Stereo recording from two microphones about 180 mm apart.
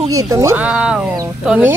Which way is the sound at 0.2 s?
20° right (ahead or behind).